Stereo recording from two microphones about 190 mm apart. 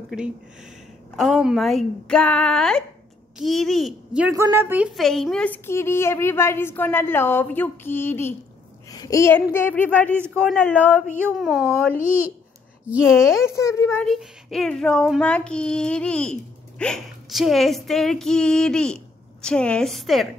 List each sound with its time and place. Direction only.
0.1 s speech: 5° right (ahead or behind)
4.9 s a woman's voice: centre (ahead or behind)
13.5 s a woman's voice: 15° left (ahead or behind)
14.0 s speech: centre (ahead or behind)